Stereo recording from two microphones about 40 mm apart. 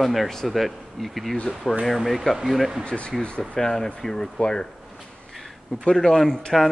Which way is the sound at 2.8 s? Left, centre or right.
Left.